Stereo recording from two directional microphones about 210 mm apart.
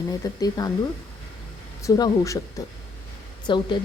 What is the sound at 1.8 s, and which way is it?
Speech, 15° left (ahead or behind).